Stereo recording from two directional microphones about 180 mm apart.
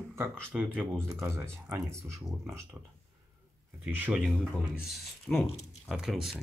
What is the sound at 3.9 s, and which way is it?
Speech, 10° right (ahead or behind).